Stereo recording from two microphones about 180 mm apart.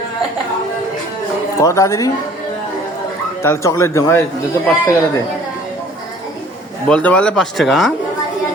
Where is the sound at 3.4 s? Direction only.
15° left (ahead or behind).